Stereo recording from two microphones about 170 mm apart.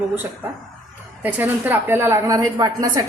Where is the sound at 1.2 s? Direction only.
10° right (ahead or behind).